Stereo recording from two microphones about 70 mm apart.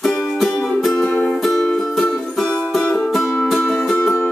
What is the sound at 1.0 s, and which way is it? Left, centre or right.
Music, centre.